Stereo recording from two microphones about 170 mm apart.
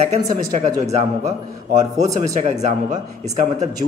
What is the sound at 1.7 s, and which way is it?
A man's voice, 45° right (ahead or behind).